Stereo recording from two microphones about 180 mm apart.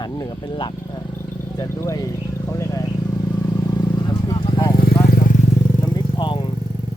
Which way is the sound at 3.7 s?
25° left (ahead or behind).